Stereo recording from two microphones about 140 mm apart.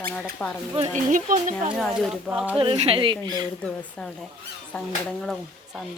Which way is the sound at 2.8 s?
40° right (ahead or behind).